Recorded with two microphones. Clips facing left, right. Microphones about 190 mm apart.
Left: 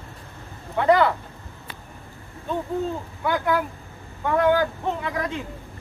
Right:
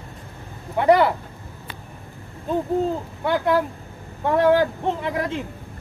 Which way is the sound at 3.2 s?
30° right (ahead or behind).